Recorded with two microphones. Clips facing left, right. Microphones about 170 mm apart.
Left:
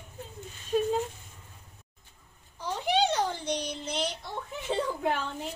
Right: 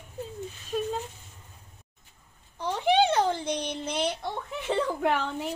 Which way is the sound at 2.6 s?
55° right (ahead or behind).